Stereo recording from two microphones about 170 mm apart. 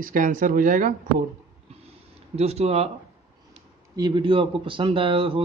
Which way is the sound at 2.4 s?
40° right (ahead or behind).